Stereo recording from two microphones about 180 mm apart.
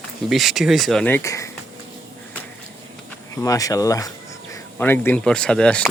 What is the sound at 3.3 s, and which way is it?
Speech, 20° left (ahead or behind).